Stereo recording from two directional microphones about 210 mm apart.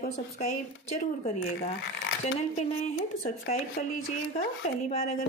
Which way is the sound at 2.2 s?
30° left (ahead or behind).